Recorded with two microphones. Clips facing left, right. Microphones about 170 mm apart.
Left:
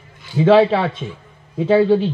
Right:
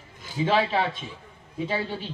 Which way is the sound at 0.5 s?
65° left (ahead or behind).